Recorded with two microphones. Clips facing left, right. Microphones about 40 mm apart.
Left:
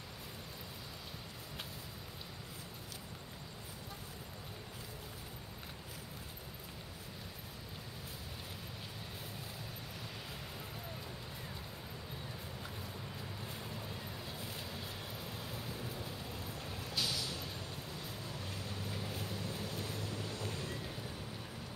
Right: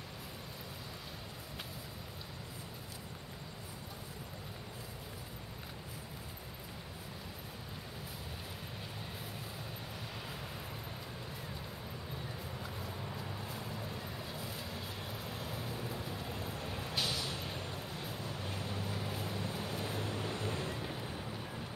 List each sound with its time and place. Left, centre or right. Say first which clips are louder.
13.4 s vehicle: right 3 dB; centre; by 21.3 s right